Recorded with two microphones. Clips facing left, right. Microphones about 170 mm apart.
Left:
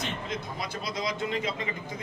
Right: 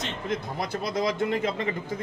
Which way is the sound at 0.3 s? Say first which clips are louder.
Right 5 dB; 55° right (ahead or behind).